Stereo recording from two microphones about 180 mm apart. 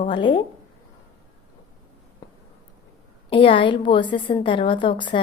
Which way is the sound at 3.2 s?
30° left (ahead or behind).